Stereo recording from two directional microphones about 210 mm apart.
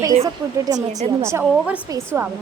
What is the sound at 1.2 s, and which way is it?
Speech, 10° right (ahead or behind).